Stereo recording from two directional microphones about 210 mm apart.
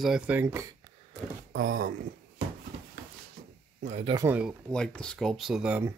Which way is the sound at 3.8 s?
30° right (ahead or behind).